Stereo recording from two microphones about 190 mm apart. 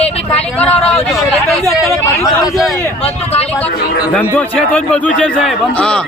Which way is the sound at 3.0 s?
35° left (ahead or behind).